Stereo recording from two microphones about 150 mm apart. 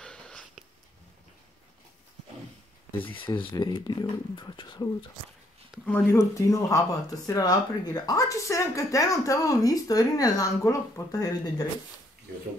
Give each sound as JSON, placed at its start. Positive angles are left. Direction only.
{"t": 0.0, "sound": "a sound", "side_deg": 5}
{"t": 3.2, "sound": "speech", "side_deg": 35}
{"t": 5.9, "sound": "speech", "side_deg": 15}